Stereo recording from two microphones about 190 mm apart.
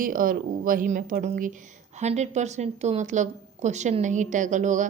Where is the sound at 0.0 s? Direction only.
45° right (ahead or behind).